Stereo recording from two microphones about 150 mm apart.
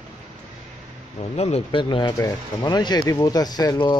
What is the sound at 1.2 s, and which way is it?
Speech, 45° left (ahead or behind).